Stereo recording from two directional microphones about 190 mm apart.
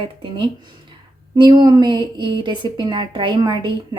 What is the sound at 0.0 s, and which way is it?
A woman's voice, 25° right (ahead or behind).